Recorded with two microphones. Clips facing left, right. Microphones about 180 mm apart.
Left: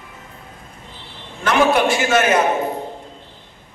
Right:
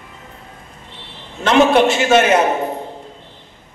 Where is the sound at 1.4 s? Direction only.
25° right (ahead or behind).